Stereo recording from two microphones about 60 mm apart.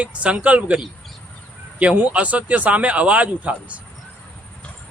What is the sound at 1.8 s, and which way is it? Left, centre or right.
Speech, right.